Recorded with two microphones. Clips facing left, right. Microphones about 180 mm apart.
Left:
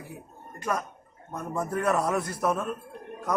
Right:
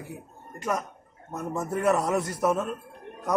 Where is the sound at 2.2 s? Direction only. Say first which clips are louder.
Right 2 dB; 20° right (ahead or behind).